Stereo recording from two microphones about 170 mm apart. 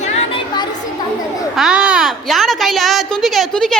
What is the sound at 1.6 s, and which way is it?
Speech, 5° right (ahead or behind).